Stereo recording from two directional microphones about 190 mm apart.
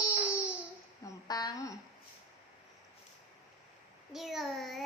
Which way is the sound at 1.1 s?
20° left (ahead or behind).